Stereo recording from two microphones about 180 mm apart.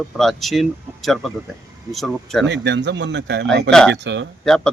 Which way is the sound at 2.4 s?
80° right.